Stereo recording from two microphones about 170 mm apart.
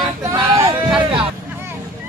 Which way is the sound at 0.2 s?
20° right (ahead or behind).